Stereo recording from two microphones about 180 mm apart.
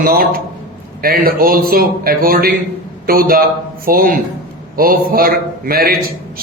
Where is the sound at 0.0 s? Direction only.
55° right (ahead or behind).